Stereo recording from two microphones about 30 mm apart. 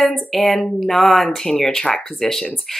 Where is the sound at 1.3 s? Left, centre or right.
Left.